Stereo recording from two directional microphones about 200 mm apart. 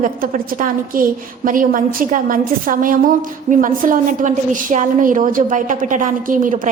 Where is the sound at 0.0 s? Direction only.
45° right (ahead or behind).